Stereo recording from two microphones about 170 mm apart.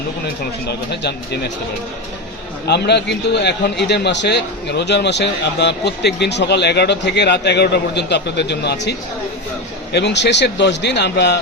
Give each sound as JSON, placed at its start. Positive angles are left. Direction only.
{"t": 2.6, "sound": "a man's voice", "side_deg": 80}
{"t": 9.9, "sound": "a man's voice", "side_deg": 90}